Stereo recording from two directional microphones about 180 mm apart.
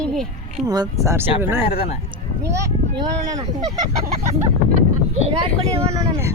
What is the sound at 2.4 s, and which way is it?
Speech, 15° right (ahead or behind).